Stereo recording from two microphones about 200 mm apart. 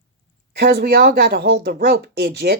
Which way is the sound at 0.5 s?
50° right (ahead or behind).